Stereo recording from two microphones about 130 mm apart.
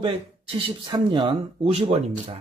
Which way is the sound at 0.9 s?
35° right (ahead or behind).